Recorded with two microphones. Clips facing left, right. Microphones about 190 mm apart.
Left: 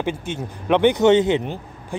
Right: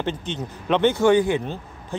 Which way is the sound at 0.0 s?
10° left (ahead or behind).